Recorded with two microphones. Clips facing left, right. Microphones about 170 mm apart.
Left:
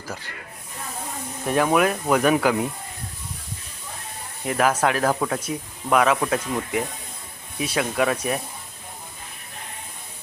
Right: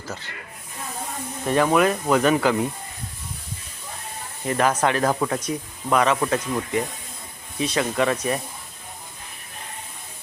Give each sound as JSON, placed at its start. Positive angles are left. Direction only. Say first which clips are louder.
{"t": 1.5, "sound": "speech", "louder": "right 1 dB", "side_deg": 5}
{"t": 4.4, "sound": "speech", "louder": "even", "side_deg": 5}